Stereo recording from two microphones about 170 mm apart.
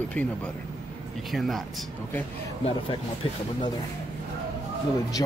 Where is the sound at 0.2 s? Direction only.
10° left (ahead or behind).